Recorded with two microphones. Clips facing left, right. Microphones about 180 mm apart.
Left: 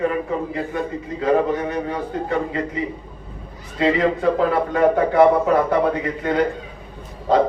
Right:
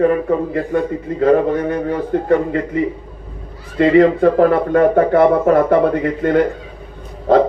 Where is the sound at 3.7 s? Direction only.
55° right (ahead or behind).